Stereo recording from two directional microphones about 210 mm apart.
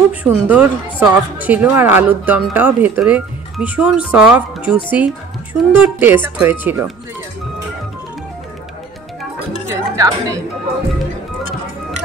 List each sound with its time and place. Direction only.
0.2 s a woman's voice: 5° right (ahead or behind)
9.7 s music: 15° right (ahead or behind)